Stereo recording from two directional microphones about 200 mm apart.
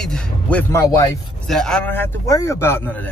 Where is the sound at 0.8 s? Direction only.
15° left (ahead or behind).